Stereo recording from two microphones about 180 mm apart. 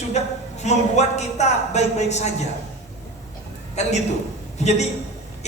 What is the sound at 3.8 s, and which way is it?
Speech, 40° left (ahead or behind).